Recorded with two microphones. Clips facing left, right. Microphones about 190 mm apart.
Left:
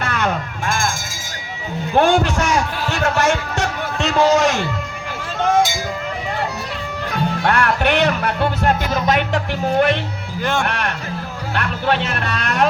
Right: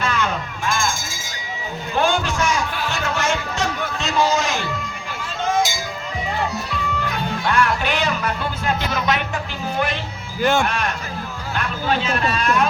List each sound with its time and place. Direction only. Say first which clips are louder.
0.0 s a sound: left 2 dB; 60° left (ahead or behind)
2.0 s heart sounds: left 5 dB; 70° left (ahead or behind)
2.9 s music: left 7 dB; 70° left (ahead or behind)
5.4 s a sound: left 4 dB; 65° left (ahead or behind)
7.4 s music: left 2 dB; 60° left (ahead or behind)
8.9 s music: left 3 dB; 40° left (ahead or behind)
9.7 s speech: left 7 dB; 60° left (ahead or behind)